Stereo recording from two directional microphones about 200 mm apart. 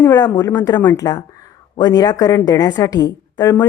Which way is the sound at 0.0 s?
15° left (ahead or behind).